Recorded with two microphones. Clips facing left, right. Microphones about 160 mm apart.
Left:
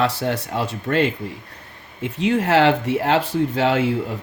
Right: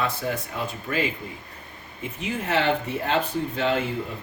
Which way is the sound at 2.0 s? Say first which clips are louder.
Left 10 dB; 90° left.